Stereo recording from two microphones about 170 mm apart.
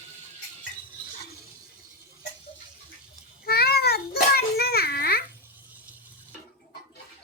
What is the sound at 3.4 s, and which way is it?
Child singing, 65° left (ahead or behind).